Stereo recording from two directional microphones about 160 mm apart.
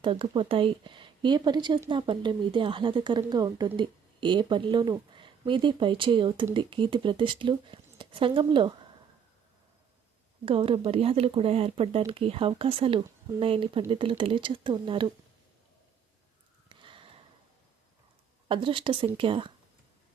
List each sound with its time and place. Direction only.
0.0 s a woman's voice: 30° right (ahead or behind)
10.4 s speech: 35° right (ahead or behind)
16.6 s a sound: 30° right (ahead or behind)
18.4 s speech: 30° right (ahead or behind)